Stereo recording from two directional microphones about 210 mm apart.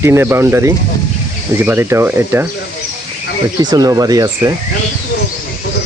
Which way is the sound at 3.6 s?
20° right (ahead or behind).